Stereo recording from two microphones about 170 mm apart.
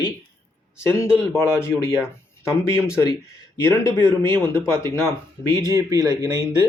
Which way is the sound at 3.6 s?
15° left (ahead or behind).